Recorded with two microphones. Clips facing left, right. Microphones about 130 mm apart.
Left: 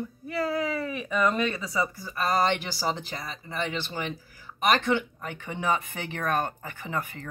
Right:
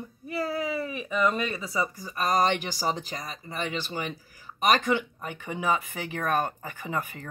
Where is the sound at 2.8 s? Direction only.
45° right (ahead or behind).